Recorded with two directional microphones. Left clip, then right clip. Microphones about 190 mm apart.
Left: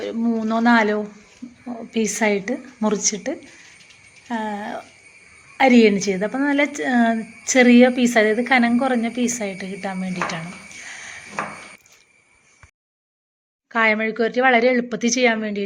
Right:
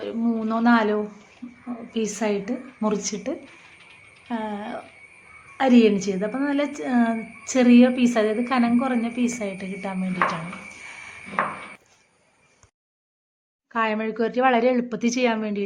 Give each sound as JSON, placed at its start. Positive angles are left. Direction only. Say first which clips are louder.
{"t": 0.0, "sound": "a woman's voice", "louder": "left 3 dB", "side_deg": 15}
{"t": 13.7, "sound": "speech", "louder": "left 6 dB", "side_deg": 10}